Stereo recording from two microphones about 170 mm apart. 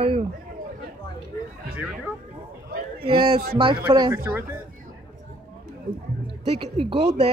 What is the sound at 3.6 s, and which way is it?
Speech, 30° right (ahead or behind).